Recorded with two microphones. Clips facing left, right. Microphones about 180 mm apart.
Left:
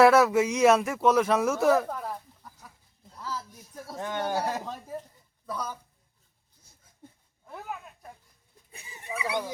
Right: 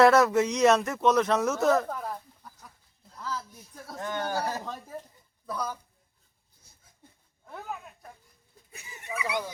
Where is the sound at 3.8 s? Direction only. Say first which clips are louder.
Left 1 dB; 10° left (ahead or behind).